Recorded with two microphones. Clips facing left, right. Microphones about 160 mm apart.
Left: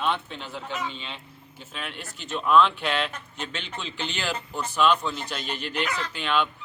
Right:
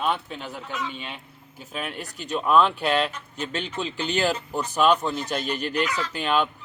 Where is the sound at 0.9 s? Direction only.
10° right (ahead or behind).